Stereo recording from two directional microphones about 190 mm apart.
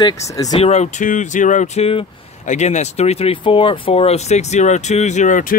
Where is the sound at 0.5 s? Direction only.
35° left (ahead or behind).